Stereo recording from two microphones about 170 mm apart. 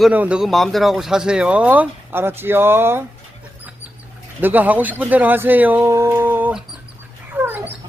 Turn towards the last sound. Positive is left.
turn(degrees=-10)  # may be behind; listen again after turning